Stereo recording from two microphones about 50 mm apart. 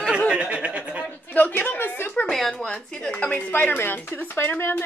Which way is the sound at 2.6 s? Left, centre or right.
Centre.